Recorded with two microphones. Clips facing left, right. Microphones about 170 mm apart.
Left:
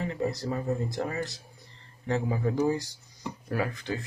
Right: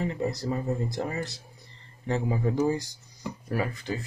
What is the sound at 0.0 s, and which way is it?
Speech, 15° right (ahead or behind).